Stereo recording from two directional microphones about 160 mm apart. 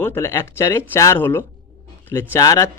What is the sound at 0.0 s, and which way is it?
Speech, 15° left (ahead or behind).